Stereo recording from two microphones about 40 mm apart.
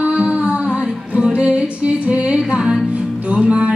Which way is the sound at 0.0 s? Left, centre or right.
Right.